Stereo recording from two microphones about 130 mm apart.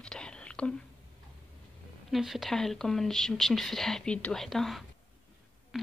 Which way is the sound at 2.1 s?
Centre (ahead or behind).